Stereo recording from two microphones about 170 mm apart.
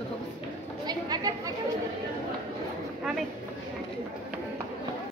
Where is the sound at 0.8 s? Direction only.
25° right (ahead or behind).